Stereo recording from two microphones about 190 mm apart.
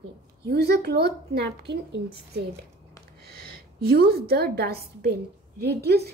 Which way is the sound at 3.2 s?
55° right (ahead or behind).